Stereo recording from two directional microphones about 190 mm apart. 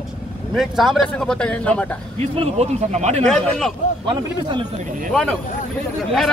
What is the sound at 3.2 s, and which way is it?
Speech, 5° left (ahead or behind).